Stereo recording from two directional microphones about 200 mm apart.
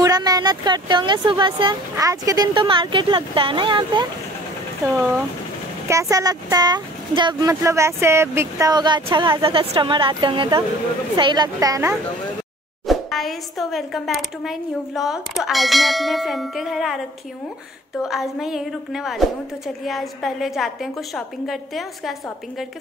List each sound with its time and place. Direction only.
0.0 s speech: 20° right (ahead or behind)
4.9 s speech: 10° right (ahead or behind)
12.8 s speech: centre (ahead or behind)
18.0 s speech: centre (ahead or behind)